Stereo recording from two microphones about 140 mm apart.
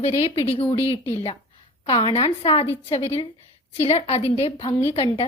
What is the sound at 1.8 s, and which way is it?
A woman's voice, 40° left (ahead or behind).